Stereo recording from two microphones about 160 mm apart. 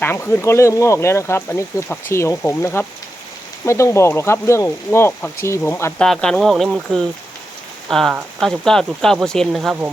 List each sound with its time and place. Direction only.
0.0 s speech: 15° left (ahead or behind)
6.0 s speech: 5° left (ahead or behind)